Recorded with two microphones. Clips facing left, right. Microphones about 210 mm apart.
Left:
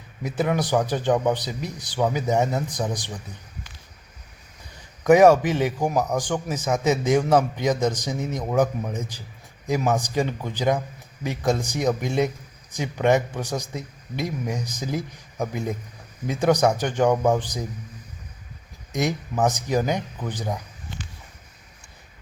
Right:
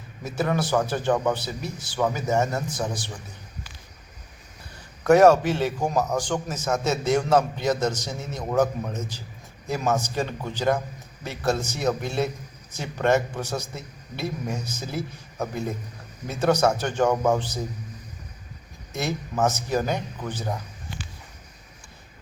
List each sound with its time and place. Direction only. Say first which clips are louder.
0.2 s a man's voice: left 2 dB; 15° left (ahead or behind)
5.0 s a man's voice: left 1 dB; 15° left (ahead or behind)
18.9 s a man's voice: left 2 dB; 15° left (ahead or behind)